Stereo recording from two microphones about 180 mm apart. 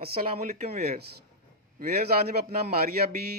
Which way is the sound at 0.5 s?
40° right (ahead or behind).